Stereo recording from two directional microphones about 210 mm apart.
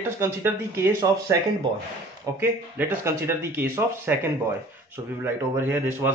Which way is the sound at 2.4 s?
10° right (ahead or behind).